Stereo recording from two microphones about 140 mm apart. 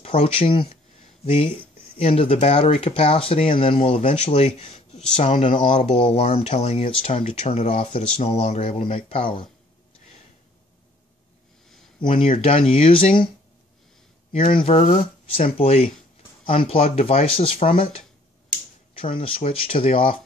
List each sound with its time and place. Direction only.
0.0 s speech: 40° left (ahead or behind)
12.0 s speech: 40° left (ahead or behind)
14.5 s speech: 45° left (ahead or behind)